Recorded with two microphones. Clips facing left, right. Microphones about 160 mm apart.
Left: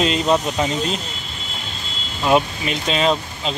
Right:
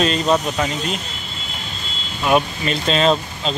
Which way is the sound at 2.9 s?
10° left (ahead or behind).